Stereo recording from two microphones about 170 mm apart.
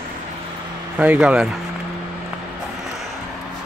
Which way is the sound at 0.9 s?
10° right (ahead or behind).